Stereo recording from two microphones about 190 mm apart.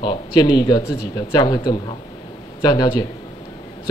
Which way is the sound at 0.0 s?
25° left (ahead or behind).